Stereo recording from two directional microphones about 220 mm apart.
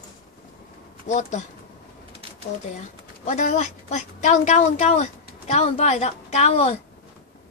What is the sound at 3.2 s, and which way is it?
Speech, 30° left (ahead or behind).